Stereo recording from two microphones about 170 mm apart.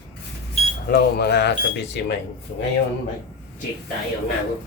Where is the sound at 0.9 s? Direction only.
75° left (ahead or behind).